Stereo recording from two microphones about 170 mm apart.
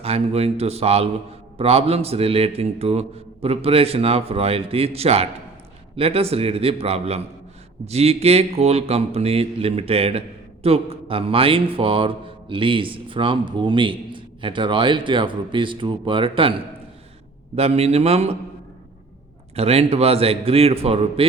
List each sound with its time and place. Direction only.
0.0 s speech: 35° right (ahead or behind)
19.5 s speech: 35° right (ahead or behind)